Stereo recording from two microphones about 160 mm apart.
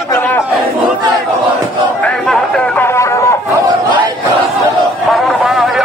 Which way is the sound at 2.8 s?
20° left (ahead or behind).